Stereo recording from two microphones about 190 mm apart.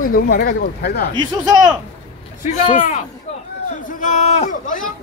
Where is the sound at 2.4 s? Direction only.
45° left (ahead or behind).